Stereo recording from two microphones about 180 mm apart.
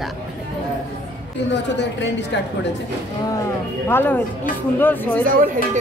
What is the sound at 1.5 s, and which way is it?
Speech, 75° left (ahead or behind).